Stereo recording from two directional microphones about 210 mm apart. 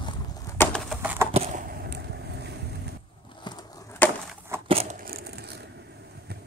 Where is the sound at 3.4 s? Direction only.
20° left (ahead or behind).